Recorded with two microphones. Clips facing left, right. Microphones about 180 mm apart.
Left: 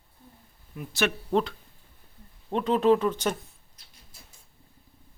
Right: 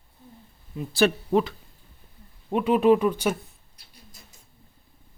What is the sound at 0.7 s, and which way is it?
Speech, 30° right (ahead or behind).